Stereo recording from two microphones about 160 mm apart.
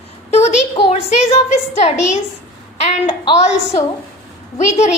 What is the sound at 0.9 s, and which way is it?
A woman's voice, 45° left (ahead or behind).